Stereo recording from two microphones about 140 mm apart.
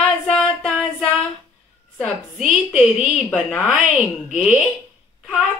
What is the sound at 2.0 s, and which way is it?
Speech, 5° right (ahead or behind).